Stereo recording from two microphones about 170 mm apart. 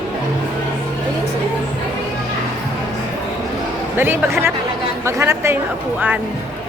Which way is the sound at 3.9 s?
15° right (ahead or behind).